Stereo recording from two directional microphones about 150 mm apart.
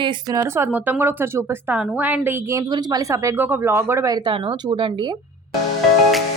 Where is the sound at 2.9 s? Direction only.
15° right (ahead or behind).